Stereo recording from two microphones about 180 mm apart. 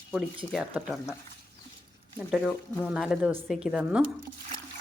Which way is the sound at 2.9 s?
5° right (ahead or behind).